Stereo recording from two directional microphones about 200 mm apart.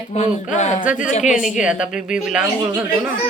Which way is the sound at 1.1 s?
40° left (ahead or behind).